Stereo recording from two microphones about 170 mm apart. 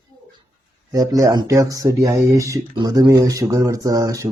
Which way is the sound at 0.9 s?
20° right (ahead or behind).